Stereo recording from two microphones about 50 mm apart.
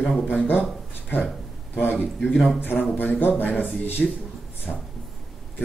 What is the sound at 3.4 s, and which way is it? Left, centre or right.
Speech, left.